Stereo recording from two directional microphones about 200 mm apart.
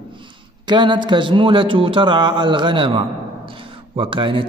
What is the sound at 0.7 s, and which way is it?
Speech, 20° right (ahead or behind).